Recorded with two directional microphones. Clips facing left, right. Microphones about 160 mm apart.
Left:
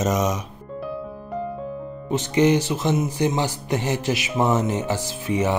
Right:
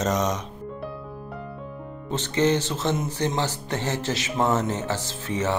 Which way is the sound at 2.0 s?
15° left (ahead or behind).